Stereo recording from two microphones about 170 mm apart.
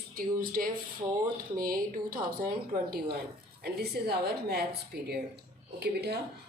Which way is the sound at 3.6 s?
70° right (ahead or behind).